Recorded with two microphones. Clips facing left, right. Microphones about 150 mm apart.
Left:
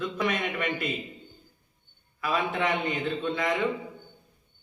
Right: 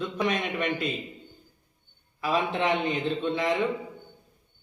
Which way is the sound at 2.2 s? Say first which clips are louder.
Right 1 dB; 25° right (ahead or behind).